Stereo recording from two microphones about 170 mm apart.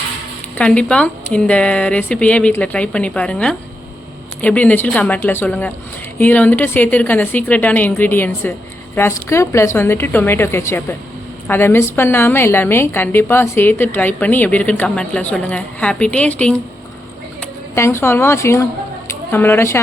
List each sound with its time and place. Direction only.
0.5 s a woman's voice: 5° left (ahead or behind)